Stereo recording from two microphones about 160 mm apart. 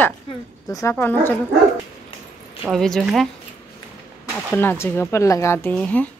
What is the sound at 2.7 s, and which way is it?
Speech, centre (ahead or behind).